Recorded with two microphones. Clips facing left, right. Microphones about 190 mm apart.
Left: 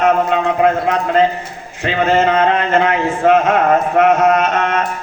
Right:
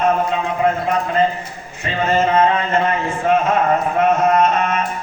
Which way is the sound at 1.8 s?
75° left (ahead or behind).